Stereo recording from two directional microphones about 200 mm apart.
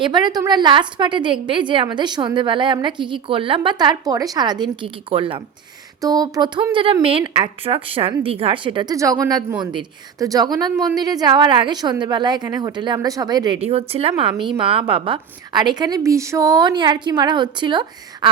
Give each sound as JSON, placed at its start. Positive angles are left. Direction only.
{"t": 0.0, "sound": "a woman's voice", "side_deg": -20}
{"t": 13.6, "sound": "a woman's voice", "side_deg": -30}